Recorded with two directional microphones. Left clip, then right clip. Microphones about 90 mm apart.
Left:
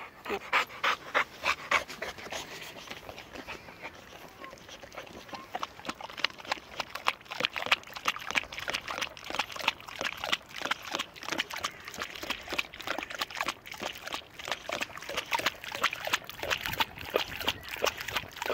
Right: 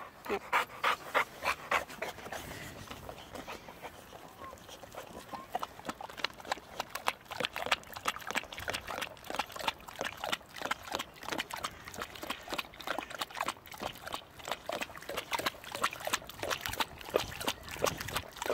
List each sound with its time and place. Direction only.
0.5 s pant: 25° right (ahead or behind)
1.2 s pant: 45° right (ahead or behind)
1.6 s dog: centre (ahead or behind)
4.9 s horse: 30° right (ahead or behind); by 16.2 s 10° right (ahead or behind)
16.3 s a sound: 15° right (ahead or behind)